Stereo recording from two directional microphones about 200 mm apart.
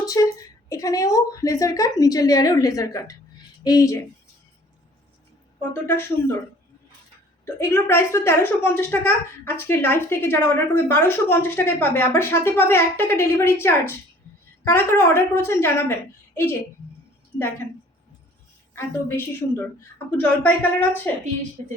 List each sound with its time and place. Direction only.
0.0 s a woman's voice: 15° left (ahead or behind)
5.8 s a woman's voice: 10° left (ahead or behind)
7.4 s a woman's voice: 10° left (ahead or behind)
18.7 s a woman's voice: 10° left (ahead or behind)